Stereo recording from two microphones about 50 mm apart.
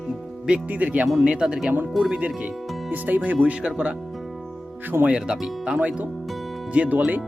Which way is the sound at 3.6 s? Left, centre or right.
Centre.